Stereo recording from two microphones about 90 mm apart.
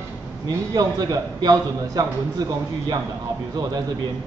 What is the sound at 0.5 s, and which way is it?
A man's voice, 45° right (ahead or behind).